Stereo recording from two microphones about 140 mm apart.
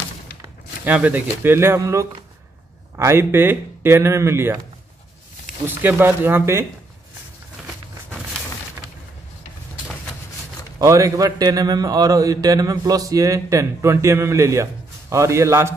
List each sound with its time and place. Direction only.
0.8 s speech: 10° right (ahead or behind)
5.8 s speech: 15° right (ahead or behind)
10.8 s speech: 25° right (ahead or behind)